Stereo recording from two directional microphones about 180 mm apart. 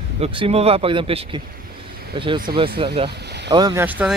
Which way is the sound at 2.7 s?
30° right (ahead or behind).